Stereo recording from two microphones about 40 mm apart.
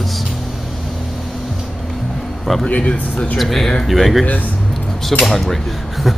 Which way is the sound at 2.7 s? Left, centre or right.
Left.